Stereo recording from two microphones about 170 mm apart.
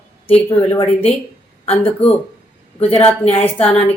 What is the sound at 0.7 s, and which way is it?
Speech, 35° left (ahead or behind).